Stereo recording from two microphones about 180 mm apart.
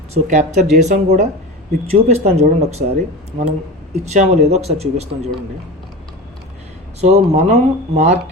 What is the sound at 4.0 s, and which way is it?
Speech, 40° right (ahead or behind).